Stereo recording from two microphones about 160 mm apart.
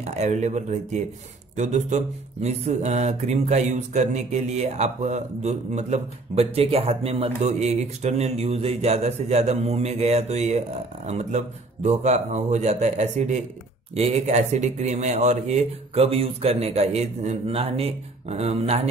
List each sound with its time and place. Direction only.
0.0 s speech: 45° right (ahead or behind)